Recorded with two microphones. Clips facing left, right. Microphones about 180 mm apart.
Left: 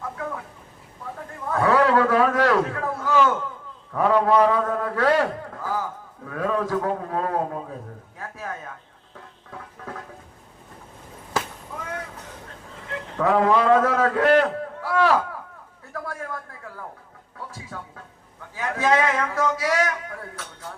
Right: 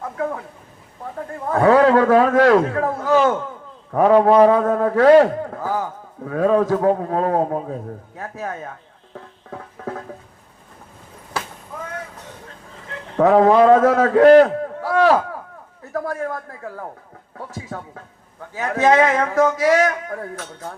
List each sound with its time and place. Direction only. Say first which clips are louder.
0.0 s a sound: right 7 dB; 45° right (ahead or behind)
1.5 s a man's voice: right 6 dB; 45° right (ahead or behind)
13.1 s a man's voice: right 7 dB; 40° right (ahead or behind)